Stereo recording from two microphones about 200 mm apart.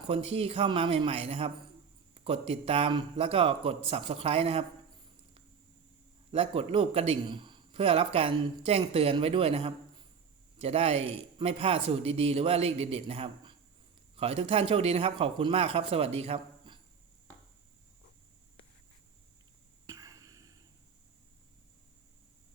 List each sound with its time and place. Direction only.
0.1 s a man's voice: 30° right (ahead or behind)
6.3 s a man's voice: 30° right (ahead or behind)
19.9 s a sound: 15° right (ahead or behind)